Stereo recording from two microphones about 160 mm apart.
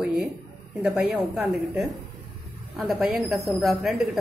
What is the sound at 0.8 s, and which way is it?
Speech, 5° right (ahead or behind).